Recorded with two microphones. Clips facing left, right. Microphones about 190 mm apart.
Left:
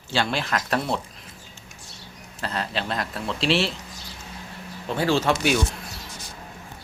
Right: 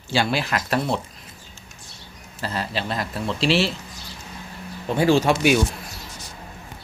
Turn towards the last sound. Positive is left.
turn(degrees=-15)  # may be behind; listen again after turning